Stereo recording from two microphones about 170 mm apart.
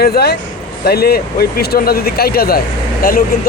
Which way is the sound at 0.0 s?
70° left (ahead or behind).